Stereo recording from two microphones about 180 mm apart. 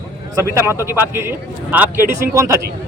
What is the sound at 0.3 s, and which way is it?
A man's voice, 15° right (ahead or behind).